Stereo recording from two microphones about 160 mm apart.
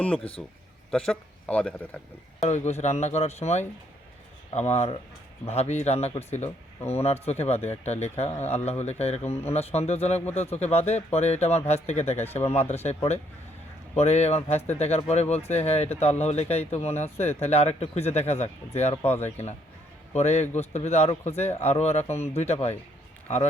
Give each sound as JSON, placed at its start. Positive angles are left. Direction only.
{"t": 0.4, "sound": "a man's voice", "side_deg": 0}
{"t": 2.4, "sound": "speech", "side_deg": 45}